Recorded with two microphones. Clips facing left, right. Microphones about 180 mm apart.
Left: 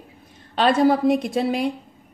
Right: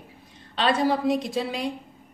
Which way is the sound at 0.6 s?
50° left (ahead or behind).